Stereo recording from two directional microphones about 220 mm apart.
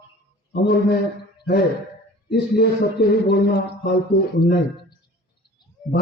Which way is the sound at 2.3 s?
45° left (ahead or behind).